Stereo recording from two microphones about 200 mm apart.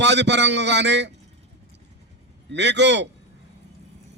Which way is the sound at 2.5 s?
60° right (ahead or behind).